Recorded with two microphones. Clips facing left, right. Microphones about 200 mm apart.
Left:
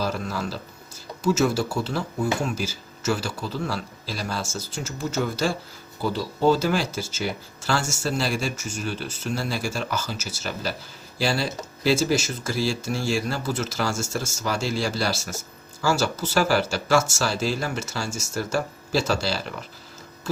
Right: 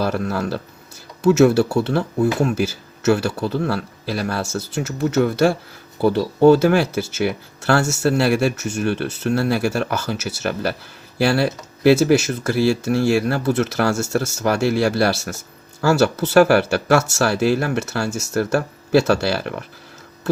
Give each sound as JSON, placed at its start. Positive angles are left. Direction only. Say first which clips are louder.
{"t": 0.0, "sound": "speech", "louder": "right 6 dB", "side_deg": -60}